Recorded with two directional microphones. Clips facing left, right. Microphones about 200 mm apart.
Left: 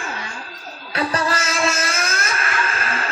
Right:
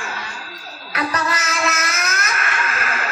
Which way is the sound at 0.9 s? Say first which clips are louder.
Left 1 dB; 30° left (ahead or behind).